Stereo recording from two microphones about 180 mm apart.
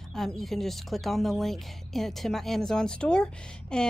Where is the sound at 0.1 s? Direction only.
Centre (ahead or behind).